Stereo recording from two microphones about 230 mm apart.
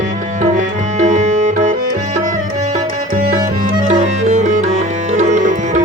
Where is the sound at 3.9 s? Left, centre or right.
Right.